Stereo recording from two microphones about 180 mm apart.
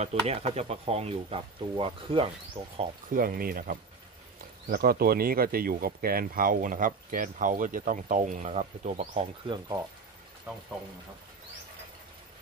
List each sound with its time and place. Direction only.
0.0 s speech: 35° right (ahead or behind)
3.1 s speech: 55° right (ahead or behind)
9.5 s speech: 20° right (ahead or behind)